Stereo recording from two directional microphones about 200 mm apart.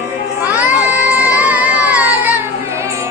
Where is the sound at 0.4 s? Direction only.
5° right (ahead or behind).